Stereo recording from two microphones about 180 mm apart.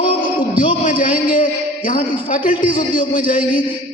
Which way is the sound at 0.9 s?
50° left (ahead or behind).